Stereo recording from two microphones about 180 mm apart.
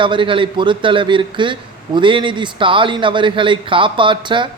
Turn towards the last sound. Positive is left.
turn(degrees=-25)  # may be behind; listen again after turning